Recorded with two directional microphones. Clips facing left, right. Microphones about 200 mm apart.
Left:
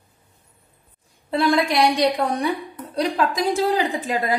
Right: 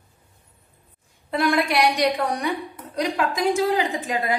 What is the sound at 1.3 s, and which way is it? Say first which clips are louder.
A woman's voice: left 2 dB; 30° left (ahead or behind).